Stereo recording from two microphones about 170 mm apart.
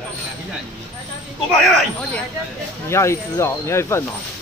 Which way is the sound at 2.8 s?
15° left (ahead or behind).